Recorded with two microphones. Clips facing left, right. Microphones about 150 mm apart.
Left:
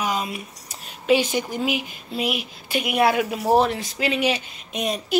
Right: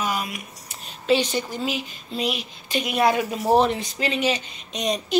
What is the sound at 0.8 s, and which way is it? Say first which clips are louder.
Speech: left 1 dB; 10° left (ahead or behind).